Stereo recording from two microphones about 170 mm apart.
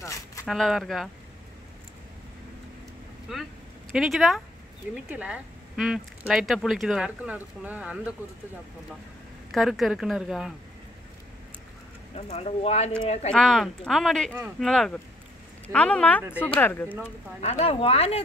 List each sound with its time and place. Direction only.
0.0 s a sound: 15° left (ahead or behind)
0.5 s speech: centre (ahead or behind)
3.9 s speech: centre (ahead or behind)
9.5 s speech: centre (ahead or behind)
12.2 s speech: 35° left (ahead or behind)
13.3 s speech: centre (ahead or behind)
17.4 s speech: 40° left (ahead or behind)